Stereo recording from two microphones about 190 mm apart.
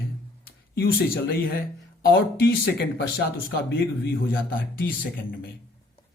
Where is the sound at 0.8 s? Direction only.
55° left (ahead or behind).